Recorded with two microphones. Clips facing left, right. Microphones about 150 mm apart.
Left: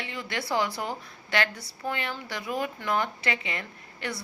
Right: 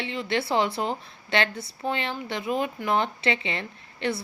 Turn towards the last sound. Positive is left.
turn(degrees=-25)  # may be behind; listen again after turning